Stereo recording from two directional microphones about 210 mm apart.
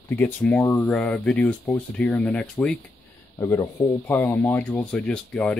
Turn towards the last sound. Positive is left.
turn(degrees=5)  # may be behind; listen again after turning